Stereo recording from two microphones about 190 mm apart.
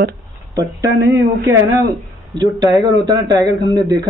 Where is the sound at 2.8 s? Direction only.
20° right (ahead or behind).